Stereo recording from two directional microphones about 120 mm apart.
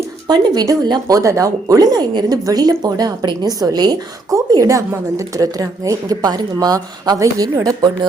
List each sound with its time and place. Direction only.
0.3 s speech: 30° right (ahead or behind)